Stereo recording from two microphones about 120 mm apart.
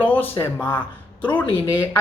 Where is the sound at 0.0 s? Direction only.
15° left (ahead or behind).